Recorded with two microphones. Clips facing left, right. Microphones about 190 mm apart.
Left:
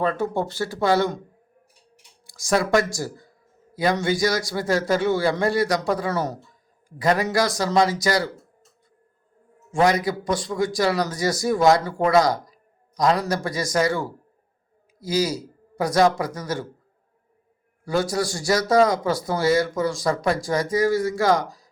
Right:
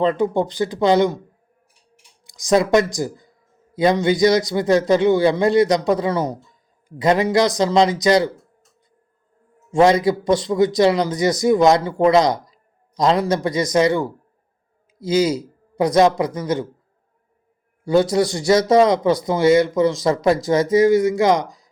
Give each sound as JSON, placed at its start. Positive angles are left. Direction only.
{"t": 0.0, "sound": "speech", "side_deg": -20}
{"t": 2.2, "sound": "a man's voice", "side_deg": -20}
{"t": 9.7, "sound": "speech", "side_deg": -25}
{"t": 17.8, "sound": "speech", "side_deg": -20}